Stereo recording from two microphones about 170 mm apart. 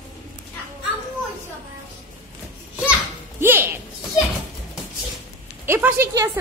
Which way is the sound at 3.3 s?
10° right (ahead or behind).